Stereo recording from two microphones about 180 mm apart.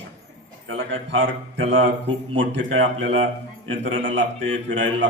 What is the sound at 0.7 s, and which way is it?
A man's voice, 90° right.